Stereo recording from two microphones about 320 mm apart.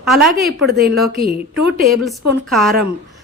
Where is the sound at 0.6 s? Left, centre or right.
Right.